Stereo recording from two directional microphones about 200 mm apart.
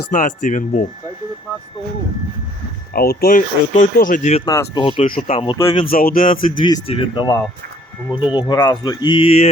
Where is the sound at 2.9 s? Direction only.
50° left (ahead or behind).